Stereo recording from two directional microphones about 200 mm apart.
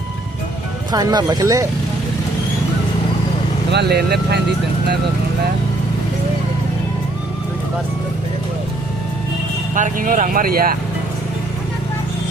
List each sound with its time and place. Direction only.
0.9 s speech: 20° right (ahead or behind)
3.7 s speech: 55° right (ahead or behind)
9.7 s speech: 40° right (ahead or behind)